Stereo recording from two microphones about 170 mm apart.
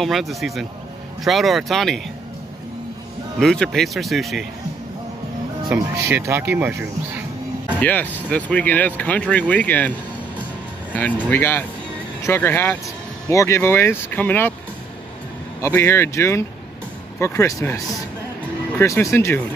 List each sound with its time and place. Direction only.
0.0 s speech: centre (ahead or behind)
3.3 s speech: 5° left (ahead or behind)
5.7 s speech: 15° right (ahead or behind)
7.8 s speech: 10° left (ahead or behind)
15.6 s speech: 15° left (ahead or behind)